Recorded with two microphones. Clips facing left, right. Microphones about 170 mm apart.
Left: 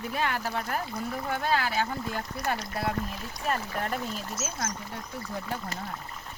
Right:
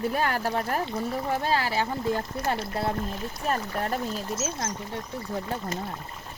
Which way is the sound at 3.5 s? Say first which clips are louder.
Right 2 dB; 35° right (ahead or behind).